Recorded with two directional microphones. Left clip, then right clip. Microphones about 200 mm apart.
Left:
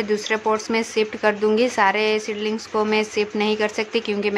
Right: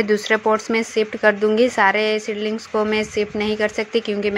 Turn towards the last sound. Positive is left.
turn(degrees=-10)  # may be behind; listen again after turning